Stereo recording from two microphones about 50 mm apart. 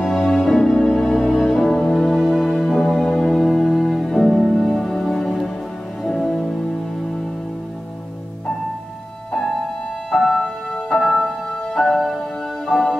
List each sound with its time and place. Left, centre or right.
0.0 s music: centre
10.1 s music: centre
10.4 s music: centre